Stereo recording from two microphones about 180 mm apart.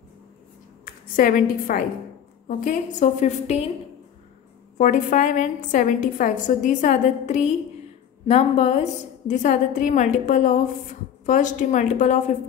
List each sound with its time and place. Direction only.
0.8 s a woman's voice: 50° left (ahead or behind)
4.7 s a woman's voice: 45° left (ahead or behind)